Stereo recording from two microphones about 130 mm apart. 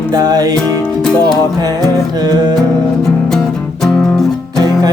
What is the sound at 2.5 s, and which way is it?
Music, 5° left (ahead or behind).